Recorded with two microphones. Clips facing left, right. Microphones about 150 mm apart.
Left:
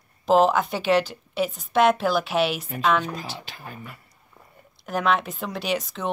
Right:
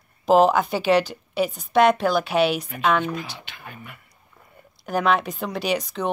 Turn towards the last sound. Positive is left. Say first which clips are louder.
# right 3 dB
turn(degrees=0)  # may be behind; listen again after turning